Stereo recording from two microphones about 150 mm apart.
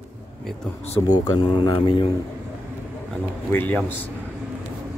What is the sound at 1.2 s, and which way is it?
Speech, 30° left (ahead or behind).